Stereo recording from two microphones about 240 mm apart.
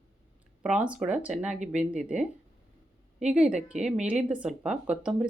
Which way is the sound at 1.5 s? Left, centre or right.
Right.